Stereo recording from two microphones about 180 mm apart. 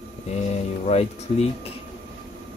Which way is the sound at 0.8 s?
35° left (ahead or behind).